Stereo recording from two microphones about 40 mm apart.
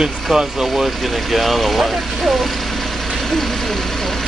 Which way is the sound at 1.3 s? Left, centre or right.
Centre.